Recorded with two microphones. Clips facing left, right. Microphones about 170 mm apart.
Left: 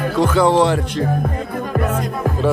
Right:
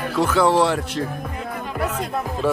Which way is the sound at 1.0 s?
50° left (ahead or behind).